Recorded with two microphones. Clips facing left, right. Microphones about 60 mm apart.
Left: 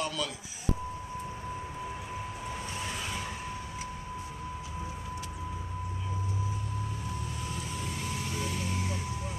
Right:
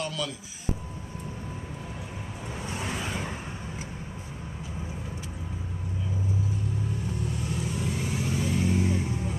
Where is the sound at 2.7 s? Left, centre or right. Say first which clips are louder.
Right 8 dB; right.